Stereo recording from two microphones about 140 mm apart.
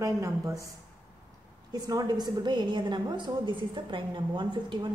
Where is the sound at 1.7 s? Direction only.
25° right (ahead or behind).